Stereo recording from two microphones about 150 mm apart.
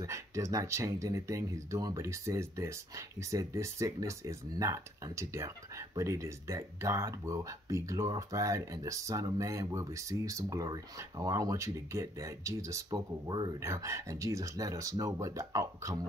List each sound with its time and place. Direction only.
0.0 s speech: 20° right (ahead or behind)